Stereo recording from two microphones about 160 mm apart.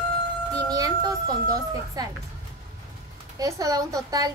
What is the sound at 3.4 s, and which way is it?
Speech, 20° right (ahead or behind).